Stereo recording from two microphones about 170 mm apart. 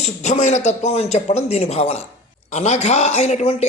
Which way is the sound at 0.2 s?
45° left (ahead or behind).